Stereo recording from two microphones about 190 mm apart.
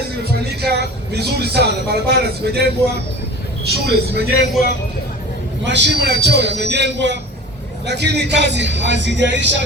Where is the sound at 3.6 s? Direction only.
60° right (ahead or behind).